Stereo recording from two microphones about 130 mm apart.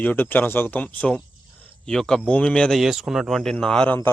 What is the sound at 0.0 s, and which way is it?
Speech, 15° left (ahead or behind).